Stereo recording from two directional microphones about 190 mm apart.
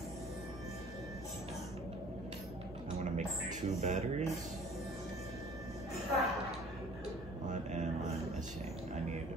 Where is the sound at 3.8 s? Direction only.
35° right (ahead or behind).